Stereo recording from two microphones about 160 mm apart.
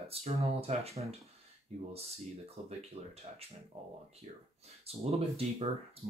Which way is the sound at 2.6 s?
40° right (ahead or behind).